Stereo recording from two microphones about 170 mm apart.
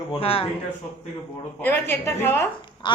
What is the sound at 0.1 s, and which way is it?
Speech, 35° left (ahead or behind).